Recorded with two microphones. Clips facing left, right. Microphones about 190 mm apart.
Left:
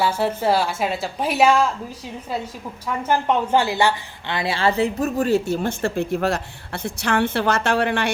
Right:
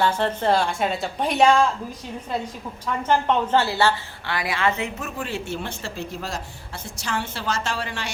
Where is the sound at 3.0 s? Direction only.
10° left (ahead or behind).